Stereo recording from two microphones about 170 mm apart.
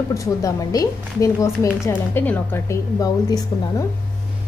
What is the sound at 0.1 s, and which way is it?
A woman's voice, 20° left (ahead or behind).